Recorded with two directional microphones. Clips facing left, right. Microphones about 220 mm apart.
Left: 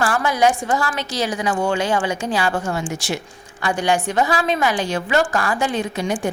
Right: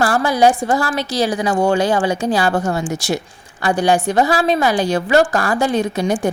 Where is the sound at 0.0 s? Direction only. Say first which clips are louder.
Right 4 dB; 35° right (ahead or behind).